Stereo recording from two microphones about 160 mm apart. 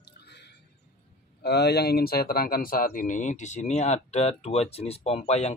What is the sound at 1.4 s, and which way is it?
Speech, 90° left.